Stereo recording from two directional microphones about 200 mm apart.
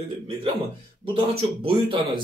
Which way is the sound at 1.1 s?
25° right (ahead or behind).